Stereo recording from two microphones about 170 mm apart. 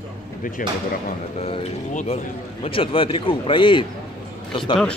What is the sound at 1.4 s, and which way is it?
A man's voice, 40° left (ahead or behind).